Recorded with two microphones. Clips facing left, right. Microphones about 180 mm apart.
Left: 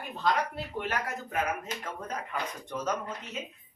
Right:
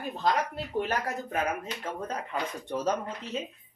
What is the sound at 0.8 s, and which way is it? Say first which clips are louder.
A woman's voice: right 4 dB; 35° right (ahead or behind).